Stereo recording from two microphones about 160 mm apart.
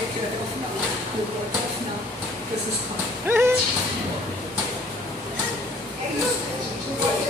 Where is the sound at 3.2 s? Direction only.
15° right (ahead or behind).